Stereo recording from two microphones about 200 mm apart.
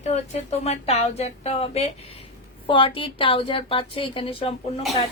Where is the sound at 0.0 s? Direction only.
35° left (ahead or behind).